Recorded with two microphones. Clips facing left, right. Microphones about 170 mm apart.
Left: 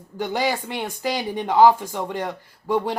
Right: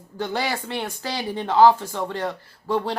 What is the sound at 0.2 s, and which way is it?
Speech, 15° left (ahead or behind).